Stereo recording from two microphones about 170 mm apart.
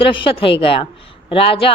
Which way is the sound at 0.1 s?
30° left (ahead or behind).